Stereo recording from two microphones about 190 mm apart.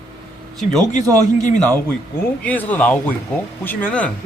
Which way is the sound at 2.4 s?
10° left (ahead or behind).